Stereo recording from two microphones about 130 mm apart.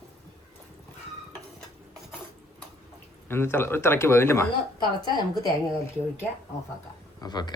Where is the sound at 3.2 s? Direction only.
20° left (ahead or behind).